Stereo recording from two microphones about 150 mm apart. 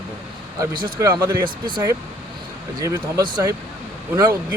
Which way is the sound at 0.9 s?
25° right (ahead or behind).